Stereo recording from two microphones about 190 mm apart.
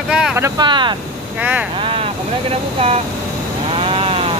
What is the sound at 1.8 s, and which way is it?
Vehicle, 30° right (ahead or behind).